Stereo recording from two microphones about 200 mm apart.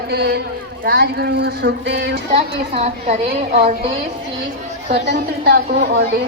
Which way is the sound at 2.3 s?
30° right (ahead or behind).